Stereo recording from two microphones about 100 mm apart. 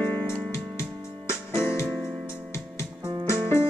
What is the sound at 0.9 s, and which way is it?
Music, 10° right (ahead or behind).